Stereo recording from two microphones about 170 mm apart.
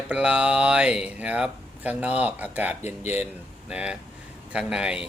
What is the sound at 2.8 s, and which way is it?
Speech, 40° left (ahead or behind).